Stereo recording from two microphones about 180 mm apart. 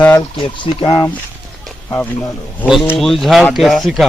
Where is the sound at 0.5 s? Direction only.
25° left (ahead or behind).